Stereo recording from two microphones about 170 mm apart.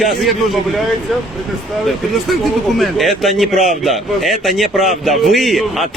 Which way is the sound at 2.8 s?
Centre (ahead or behind).